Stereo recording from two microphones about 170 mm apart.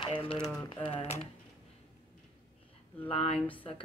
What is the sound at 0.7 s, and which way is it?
Speech, 30° left (ahead or behind).